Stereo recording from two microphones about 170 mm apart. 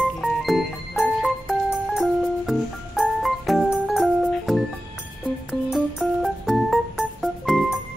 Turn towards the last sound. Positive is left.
turn(degrees=0)  # may be behind; listen again after turning